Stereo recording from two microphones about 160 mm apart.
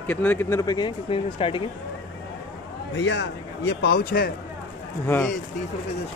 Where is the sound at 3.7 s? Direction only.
85° left.